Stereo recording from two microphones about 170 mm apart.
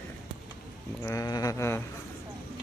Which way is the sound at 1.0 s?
20° left (ahead or behind).